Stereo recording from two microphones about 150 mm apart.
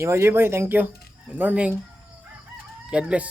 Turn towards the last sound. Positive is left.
turn(degrees=-10)  # may be behind; listen again after turning